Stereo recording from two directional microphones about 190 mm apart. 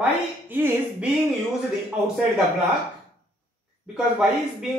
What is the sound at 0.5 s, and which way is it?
Speech, 10° right (ahead or behind).